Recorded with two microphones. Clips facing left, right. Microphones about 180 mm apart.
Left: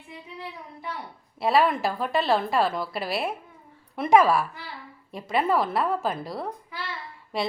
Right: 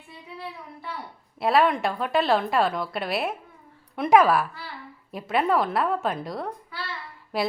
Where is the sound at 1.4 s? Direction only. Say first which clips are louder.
Right 1 dB; centre (ahead or behind).